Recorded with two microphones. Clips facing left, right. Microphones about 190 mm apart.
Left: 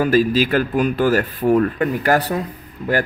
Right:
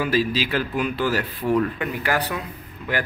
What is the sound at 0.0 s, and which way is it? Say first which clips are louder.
Speech: left 6 dB; 50° left (ahead or behind).